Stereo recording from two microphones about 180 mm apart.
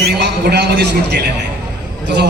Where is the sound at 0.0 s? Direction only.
65° right (ahead or behind).